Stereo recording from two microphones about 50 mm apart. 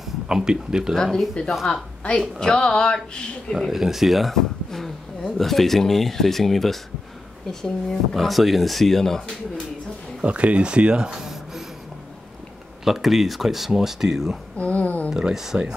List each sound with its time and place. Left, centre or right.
0.3 s speech: centre
0.9 s speech: centre
3.5 s speech: centre
10.2 s speech: right; by 11.6 s centre
12.8 s speech: centre
14.6 s a sound: left
15.0 s speech: centre